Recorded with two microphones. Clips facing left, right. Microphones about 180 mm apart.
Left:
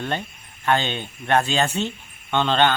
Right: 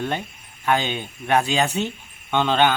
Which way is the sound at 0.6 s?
10° right (ahead or behind).